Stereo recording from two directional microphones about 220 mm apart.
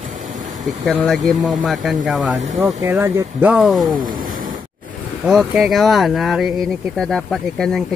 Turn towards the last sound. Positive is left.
turn(degrees=0)  # may be behind; listen again after turning